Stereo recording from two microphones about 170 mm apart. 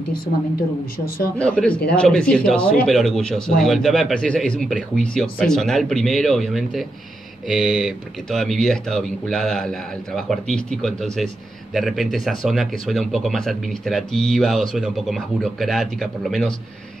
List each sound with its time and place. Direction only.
0.9 s a man's voice: 60° left (ahead or behind)
1.4 s speech: 5° left (ahead or behind)